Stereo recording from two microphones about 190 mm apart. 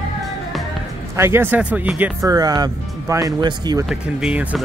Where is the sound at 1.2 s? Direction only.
10° right (ahead or behind).